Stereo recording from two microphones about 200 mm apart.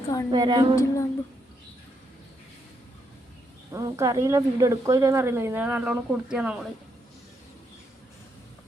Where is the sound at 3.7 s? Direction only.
15° right (ahead or behind).